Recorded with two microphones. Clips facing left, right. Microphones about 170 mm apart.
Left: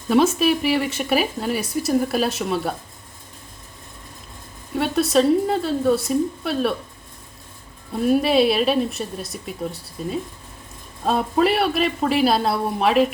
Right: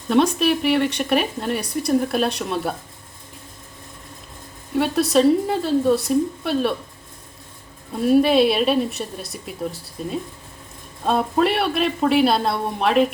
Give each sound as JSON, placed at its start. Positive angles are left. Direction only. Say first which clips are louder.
{"t": 0.1, "sound": "speech", "louder": "even", "side_deg": 5}
{"t": 4.7, "sound": "speech", "louder": "right 1 dB", "side_deg": 0}
{"t": 8.0, "sound": "speech", "louder": "right 2 dB", "side_deg": 0}